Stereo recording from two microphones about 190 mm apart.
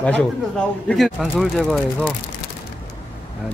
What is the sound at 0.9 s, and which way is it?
Speech, centre (ahead or behind).